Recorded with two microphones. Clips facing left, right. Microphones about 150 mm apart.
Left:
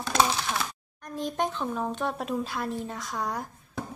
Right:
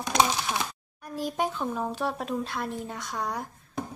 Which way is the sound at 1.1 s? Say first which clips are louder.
Even; 5° right (ahead or behind).